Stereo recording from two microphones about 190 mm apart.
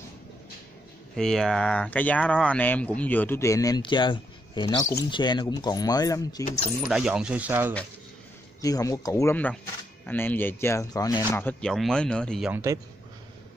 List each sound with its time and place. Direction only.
1.1 s speech: 5° left (ahead or behind); by 6.4 s 20° left (ahead or behind)
6.8 s speech: 5° right (ahead or behind)
8.5 s speech: 20° left (ahead or behind)
11.3 s speech: 5° left (ahead or behind)